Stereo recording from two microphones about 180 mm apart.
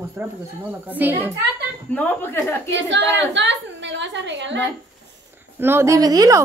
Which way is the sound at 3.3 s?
80° right.